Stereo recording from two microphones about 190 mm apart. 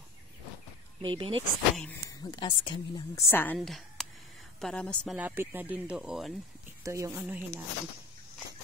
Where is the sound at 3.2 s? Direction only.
10° left (ahead or behind).